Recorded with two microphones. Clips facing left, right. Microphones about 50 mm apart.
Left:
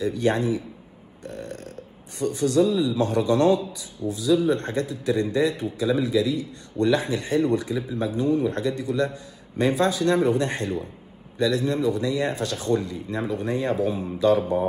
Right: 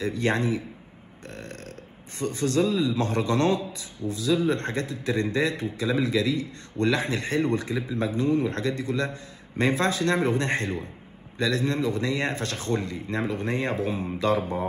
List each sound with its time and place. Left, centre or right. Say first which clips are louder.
0.0 s a man's voice: left 3 dB; right
1.2 s burping: left 4 dB; right
2.1 s a man's voice: left 4 dB; right